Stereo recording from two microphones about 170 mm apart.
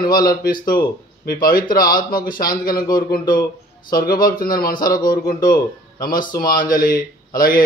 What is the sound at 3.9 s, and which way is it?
A man's voice, 60° left (ahead or behind).